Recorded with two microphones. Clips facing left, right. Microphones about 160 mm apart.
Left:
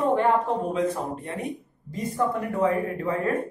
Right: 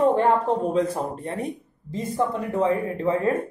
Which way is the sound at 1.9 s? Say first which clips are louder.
Right 1 dB; 25° right (ahead or behind).